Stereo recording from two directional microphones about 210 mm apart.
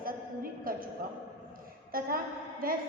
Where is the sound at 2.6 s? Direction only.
45° right (ahead or behind).